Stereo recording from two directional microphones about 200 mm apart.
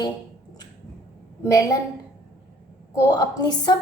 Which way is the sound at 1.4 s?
15° left (ahead or behind).